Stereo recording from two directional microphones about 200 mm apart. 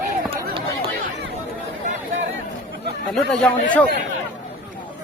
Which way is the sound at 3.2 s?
5° left (ahead or behind).